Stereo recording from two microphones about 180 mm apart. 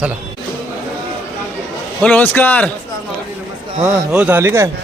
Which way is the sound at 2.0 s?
10° left (ahead or behind).